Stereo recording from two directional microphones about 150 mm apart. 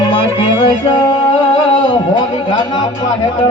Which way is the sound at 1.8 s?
30° left (ahead or behind).